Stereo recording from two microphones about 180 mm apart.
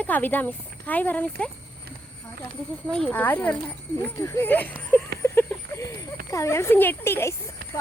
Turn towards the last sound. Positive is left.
turn(degrees=15)  # may be behind; listen again after turning